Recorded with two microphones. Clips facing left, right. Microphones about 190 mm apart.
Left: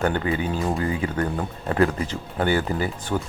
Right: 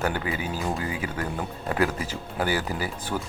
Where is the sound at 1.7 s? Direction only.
5° right (ahead or behind).